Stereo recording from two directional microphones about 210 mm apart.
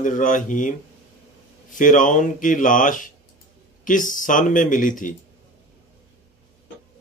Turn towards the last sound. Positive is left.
turn(degrees=40)  # may be behind; listen again after turning